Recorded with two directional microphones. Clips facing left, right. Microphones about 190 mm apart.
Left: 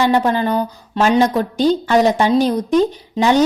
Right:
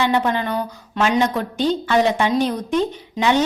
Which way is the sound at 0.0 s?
40° left (ahead or behind).